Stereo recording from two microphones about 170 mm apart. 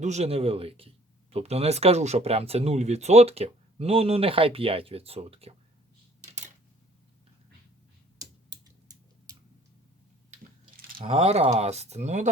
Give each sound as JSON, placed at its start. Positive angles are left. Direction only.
{"t": 0.0, "sound": "speech", "side_deg": -40}
{"t": 8.2, "sound": "a sound", "side_deg": -20}
{"t": 11.0, "sound": "speech", "side_deg": -40}